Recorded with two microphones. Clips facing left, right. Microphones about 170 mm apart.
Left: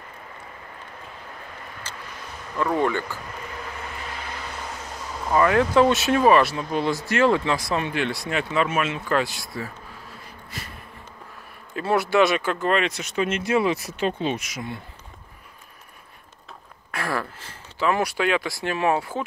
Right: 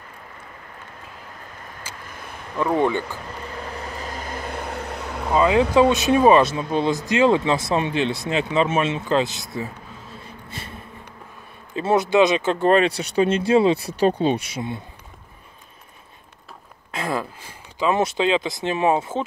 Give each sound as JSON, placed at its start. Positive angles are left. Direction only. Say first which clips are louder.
{"t": 1.9, "sound": "vehicle", "louder": "even", "side_deg": -10}
{"t": 2.5, "sound": "speech", "louder": "right 2 dB", "side_deg": -15}
{"t": 3.9, "sound": "vehicle", "louder": "right 4 dB", "side_deg": -40}
{"t": 5.3, "sound": "speech", "louder": "right 2 dB", "side_deg": -15}
{"t": 11.7, "sound": "speech", "louder": "right 3 dB", "side_deg": -20}
{"t": 16.9, "sound": "speech", "louder": "right 2 dB", "side_deg": -20}